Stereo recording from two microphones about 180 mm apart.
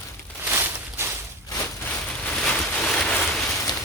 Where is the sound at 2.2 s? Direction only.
5° left (ahead or behind).